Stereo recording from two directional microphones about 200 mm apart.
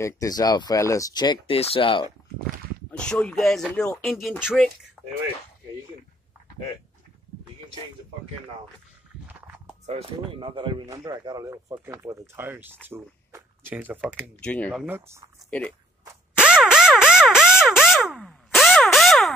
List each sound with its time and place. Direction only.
0.0 s speech: 15° left (ahead or behind)
2.9 s speech: 5° left (ahead or behind)
5.0 s a sound: 5° left (ahead or behind)
9.8 s speech: 30° right (ahead or behind); by 14.3 s 10° right (ahead or behind)
14.4 s speech: 5° left (ahead or behind)
14.9 s speech: 10° right (ahead or behind)
16.3 s a sound: 5° right (ahead or behind)